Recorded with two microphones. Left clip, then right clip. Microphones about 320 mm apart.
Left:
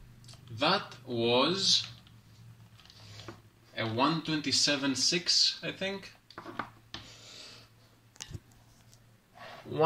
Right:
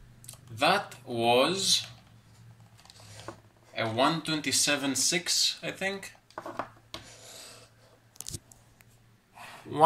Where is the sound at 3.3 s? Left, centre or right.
Right.